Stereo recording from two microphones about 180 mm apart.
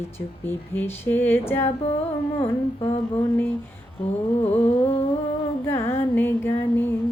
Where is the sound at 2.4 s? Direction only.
35° left (ahead or behind).